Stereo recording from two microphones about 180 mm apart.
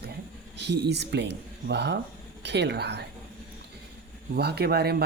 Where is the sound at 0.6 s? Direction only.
70° right (ahead or behind).